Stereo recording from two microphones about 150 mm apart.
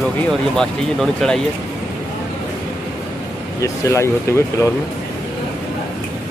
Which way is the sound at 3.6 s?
20° left (ahead or behind).